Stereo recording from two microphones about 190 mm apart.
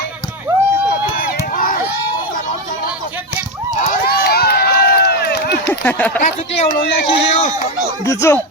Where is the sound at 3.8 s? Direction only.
50° left (ahead or behind).